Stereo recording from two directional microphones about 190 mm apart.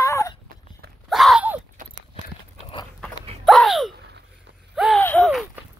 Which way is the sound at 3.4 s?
Centre (ahead or behind).